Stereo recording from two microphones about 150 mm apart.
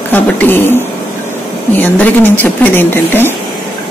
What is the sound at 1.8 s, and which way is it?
Speech, 10° left (ahead or behind).